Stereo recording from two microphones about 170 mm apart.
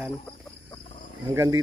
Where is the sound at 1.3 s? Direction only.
15° right (ahead or behind).